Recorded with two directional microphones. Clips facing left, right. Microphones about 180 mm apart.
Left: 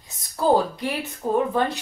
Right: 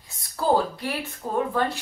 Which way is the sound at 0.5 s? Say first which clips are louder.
Left 1 dB; 20° left (ahead or behind).